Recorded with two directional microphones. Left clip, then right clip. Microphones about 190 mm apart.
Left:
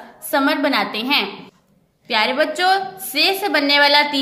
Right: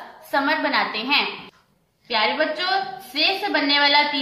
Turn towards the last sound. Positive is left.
turn(degrees=65)  # may be behind; listen again after turning